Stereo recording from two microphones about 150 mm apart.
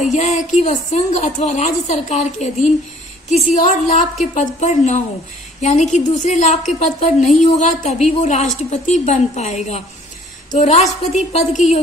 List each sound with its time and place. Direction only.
0.1 s a woman's voice: 50° left (ahead or behind)